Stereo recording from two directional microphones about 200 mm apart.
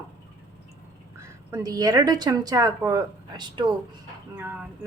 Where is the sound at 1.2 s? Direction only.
15° right (ahead or behind).